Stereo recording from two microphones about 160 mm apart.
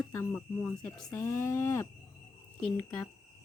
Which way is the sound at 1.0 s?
15° left (ahead or behind).